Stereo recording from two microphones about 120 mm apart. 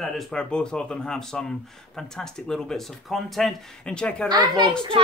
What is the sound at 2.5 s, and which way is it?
Speech, 5° left (ahead or behind).